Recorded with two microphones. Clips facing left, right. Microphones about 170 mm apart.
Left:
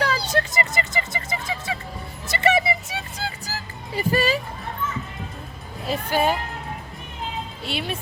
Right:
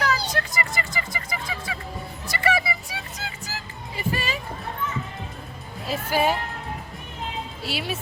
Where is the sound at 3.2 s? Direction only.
35° left (ahead or behind).